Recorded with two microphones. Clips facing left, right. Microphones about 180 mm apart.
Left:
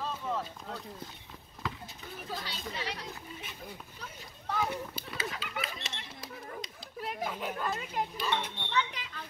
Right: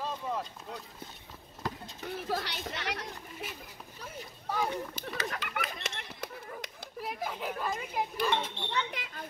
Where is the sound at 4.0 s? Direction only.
10° right (ahead or behind).